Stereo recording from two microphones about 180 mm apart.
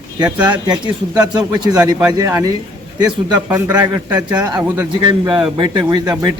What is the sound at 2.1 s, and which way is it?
A man's voice, 20° right (ahead or behind).